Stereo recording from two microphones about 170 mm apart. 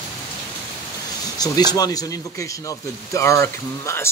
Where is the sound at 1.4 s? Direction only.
25° left (ahead or behind).